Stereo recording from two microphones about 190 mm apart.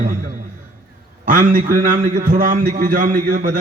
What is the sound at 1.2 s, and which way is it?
A man's voice, 45° right (ahead or behind).